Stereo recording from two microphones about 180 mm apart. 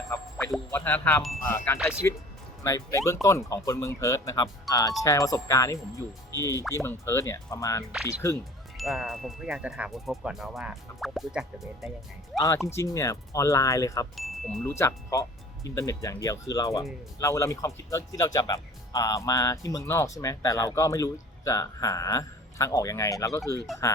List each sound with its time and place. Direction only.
0.1 s music: 15° left (ahead or behind)
0.7 s speech: 10° left (ahead or behind)
8.8 s speech: centre (ahead or behind)
12.4 s speech: 15° left (ahead or behind)
14.2 s speech: centre (ahead or behind)
14.6 s speech: 15° left (ahead or behind)